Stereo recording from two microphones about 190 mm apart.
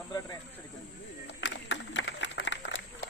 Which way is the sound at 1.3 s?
75° left (ahead or behind).